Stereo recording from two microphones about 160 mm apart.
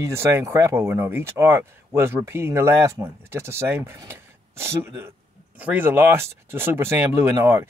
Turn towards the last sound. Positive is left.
turn(degrees=-15)  # may be behind; listen again after turning